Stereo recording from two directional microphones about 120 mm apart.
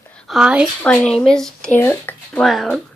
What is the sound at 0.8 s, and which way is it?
Speech, 5° left (ahead or behind).